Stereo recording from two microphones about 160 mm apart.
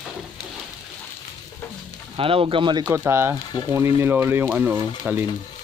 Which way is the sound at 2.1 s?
35° right (ahead or behind).